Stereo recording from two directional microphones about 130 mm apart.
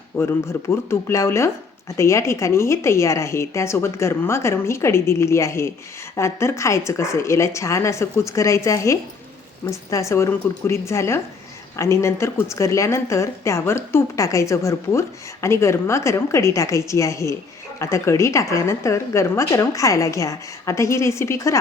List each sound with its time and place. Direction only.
0.2 s speech: 20° left (ahead or behind)